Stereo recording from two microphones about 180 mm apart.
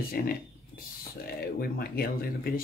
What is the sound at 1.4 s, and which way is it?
Speech, 60° left (ahead or behind).